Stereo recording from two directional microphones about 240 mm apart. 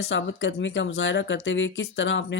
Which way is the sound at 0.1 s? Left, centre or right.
Left.